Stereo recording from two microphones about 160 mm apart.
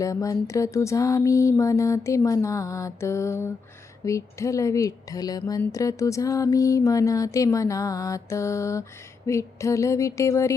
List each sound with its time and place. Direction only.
0.0 s speech: 20° left (ahead or behind)